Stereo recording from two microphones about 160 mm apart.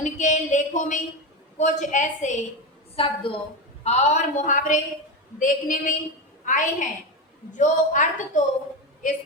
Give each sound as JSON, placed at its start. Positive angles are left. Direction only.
{"t": 0.0, "sound": "a sound", "side_deg": 50}
{"t": 1.5, "sound": "a woman's voice", "side_deg": 50}
{"t": 2.9, "sound": "a woman's voice", "side_deg": 35}